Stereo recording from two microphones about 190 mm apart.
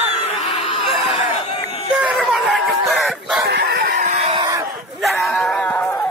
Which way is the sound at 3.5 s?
60° right (ahead or behind).